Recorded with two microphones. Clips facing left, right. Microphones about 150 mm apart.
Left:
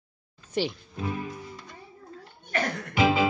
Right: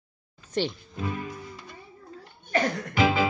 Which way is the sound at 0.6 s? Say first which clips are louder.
Even; 10° left (ahead or behind).